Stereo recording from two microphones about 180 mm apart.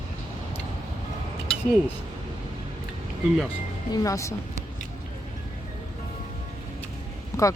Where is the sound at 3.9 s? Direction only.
20° left (ahead or behind).